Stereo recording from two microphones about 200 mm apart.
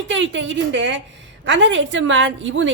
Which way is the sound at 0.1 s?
70° right (ahead or behind).